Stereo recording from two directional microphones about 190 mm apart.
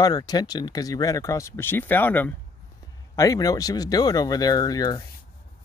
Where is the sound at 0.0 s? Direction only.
20° left (ahead or behind).